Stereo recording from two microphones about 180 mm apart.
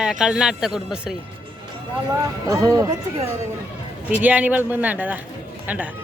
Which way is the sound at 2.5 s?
20° right (ahead or behind).